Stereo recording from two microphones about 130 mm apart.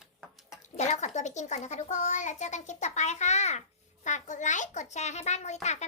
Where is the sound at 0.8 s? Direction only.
60° left (ahead or behind).